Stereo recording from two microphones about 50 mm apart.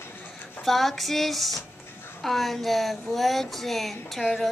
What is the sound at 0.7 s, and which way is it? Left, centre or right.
Speech, centre.